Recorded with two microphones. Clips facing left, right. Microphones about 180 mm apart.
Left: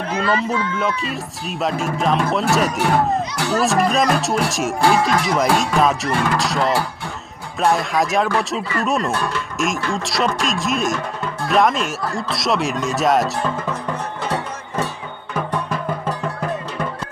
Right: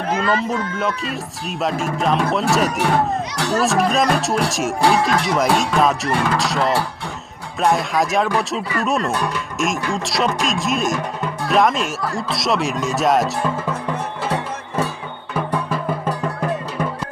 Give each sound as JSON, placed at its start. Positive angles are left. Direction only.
{"t": 0.2, "sound": "speech", "side_deg": -45}
{"t": 0.8, "sound": "speech", "side_deg": 0}
{"t": 9.1, "sound": "speech", "side_deg": -15}
{"t": 9.6, "sound": "speech", "side_deg": 0}
{"t": 15.5, "sound": "music", "side_deg": -5}